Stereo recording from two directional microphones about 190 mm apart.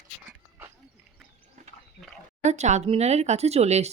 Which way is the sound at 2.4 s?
35° right (ahead or behind).